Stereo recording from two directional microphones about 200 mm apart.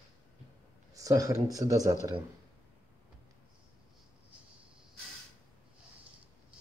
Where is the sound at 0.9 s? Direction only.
15° right (ahead or behind).